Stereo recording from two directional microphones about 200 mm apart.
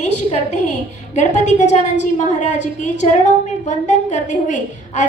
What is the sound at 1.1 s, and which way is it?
A woman's voice, 35° left (ahead or behind).